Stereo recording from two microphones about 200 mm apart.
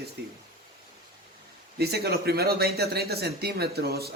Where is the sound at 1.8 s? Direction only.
50° right (ahead or behind).